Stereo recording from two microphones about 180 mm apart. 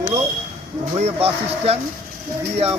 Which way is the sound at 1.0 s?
35° right (ahead or behind).